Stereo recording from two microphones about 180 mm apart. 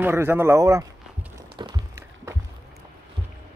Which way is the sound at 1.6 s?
25° right (ahead or behind).